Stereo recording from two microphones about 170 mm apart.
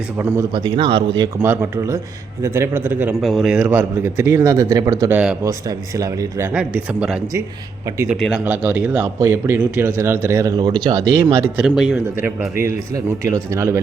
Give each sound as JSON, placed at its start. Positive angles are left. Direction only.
{"t": 0.5, "sound": "speech", "side_deg": -30}
{"t": 1.5, "sound": "speech", "side_deg": -15}
{"t": 3.2, "sound": "speech", "side_deg": 0}
{"t": 6.5, "sound": "speech", "side_deg": -5}
{"t": 7.9, "sound": "speech", "side_deg": -15}
{"t": 8.1, "sound": "speech", "side_deg": 0}
{"t": 11.5, "sound": "speech", "side_deg": -5}